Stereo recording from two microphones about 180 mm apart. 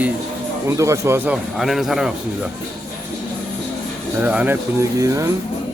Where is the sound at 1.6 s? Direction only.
Centre (ahead or behind).